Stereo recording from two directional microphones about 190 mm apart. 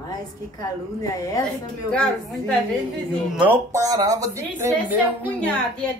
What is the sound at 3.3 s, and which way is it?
A man's voice, 10° right (ahead or behind).